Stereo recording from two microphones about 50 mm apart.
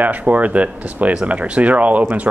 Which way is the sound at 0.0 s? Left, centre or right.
Right.